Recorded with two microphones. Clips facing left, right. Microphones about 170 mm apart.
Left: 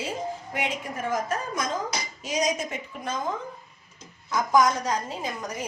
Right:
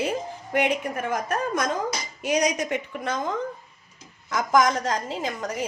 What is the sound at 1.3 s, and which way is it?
A woman's voice, 60° right (ahead or behind).